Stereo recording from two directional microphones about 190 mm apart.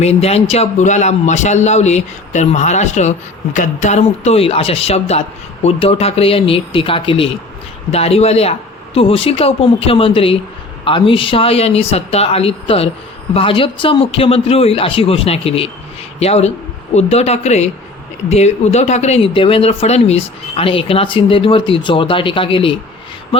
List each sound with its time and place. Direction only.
0.0 s a man's voice: 35° left (ahead or behind)